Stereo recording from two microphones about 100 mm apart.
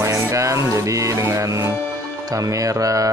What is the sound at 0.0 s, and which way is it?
Music, 30° right (ahead or behind).